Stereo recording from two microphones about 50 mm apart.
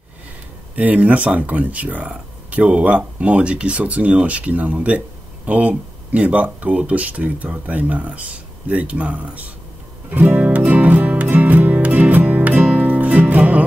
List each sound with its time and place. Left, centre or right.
0.7 s speech: right
10.3 s music: right